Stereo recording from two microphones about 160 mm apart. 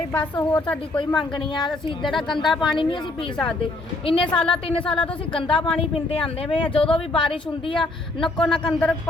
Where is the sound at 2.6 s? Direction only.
30° left (ahead or behind).